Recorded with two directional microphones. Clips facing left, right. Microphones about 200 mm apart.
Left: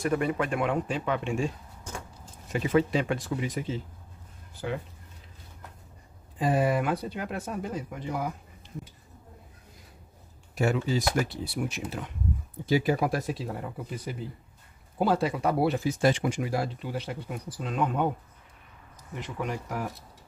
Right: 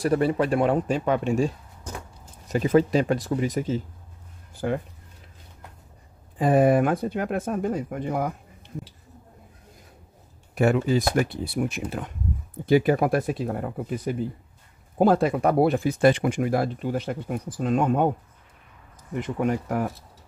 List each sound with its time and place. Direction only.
0.0 s speech: 35° right (ahead or behind); by 4.8 s 50° right (ahead or behind)
6.3 s speech: 50° right (ahead or behind)
10.5 s speech: 55° right (ahead or behind)
19.1 s speech: 50° right (ahead or behind)